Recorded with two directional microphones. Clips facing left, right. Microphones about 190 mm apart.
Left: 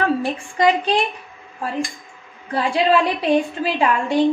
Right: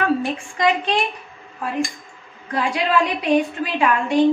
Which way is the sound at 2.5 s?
30° left (ahead or behind).